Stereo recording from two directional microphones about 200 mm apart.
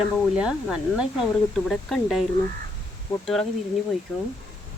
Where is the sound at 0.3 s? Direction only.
5° right (ahead or behind).